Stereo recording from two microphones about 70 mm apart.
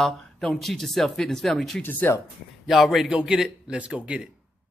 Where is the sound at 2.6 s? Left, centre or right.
Centre.